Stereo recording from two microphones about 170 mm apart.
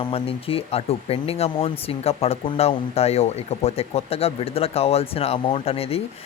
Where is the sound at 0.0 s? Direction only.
35° left (ahead or behind).